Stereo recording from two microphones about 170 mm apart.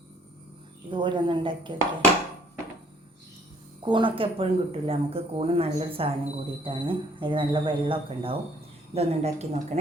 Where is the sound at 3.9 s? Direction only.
30° right (ahead or behind).